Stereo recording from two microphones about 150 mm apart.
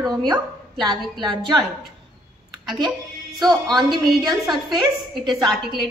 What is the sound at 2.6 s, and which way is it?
A woman's voice, centre (ahead or behind).